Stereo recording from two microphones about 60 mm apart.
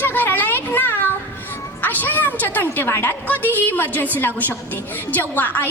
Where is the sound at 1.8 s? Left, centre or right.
Left.